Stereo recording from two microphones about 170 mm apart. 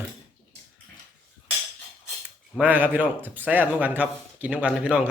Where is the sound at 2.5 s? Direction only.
10° right (ahead or behind).